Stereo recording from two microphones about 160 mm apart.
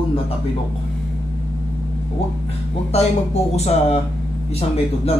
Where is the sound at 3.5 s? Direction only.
40° left (ahead or behind).